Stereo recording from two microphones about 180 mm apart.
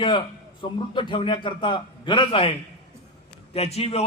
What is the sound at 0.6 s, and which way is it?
A man's voice, 25° left (ahead or behind).